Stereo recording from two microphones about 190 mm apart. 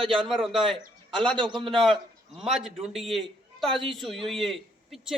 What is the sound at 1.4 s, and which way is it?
Speech, 25° right (ahead or behind).